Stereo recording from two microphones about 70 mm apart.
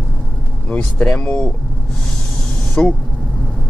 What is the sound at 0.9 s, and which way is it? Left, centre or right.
Speech, left.